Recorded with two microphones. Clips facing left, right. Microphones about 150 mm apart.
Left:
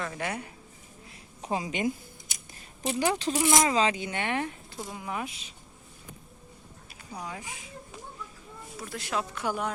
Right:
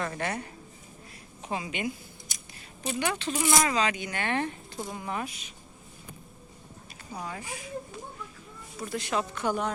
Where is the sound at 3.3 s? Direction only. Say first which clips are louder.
Left 1 dB; 15° left (ahead or behind).